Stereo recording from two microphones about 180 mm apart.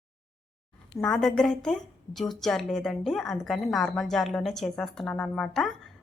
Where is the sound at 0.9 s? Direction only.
5° left (ahead or behind).